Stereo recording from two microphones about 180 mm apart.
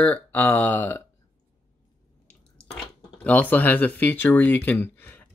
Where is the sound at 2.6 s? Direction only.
5° left (ahead or behind).